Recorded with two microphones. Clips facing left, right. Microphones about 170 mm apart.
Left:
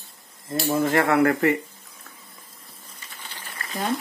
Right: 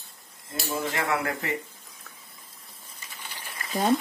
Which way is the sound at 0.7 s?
50° left (ahead or behind).